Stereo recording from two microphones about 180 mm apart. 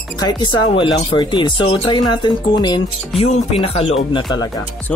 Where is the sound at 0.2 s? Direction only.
20° left (ahead or behind).